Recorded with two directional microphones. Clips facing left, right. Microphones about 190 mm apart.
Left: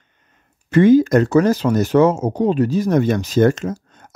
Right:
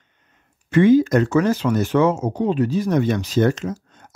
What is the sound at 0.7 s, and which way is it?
Speech, 40° left (ahead or behind).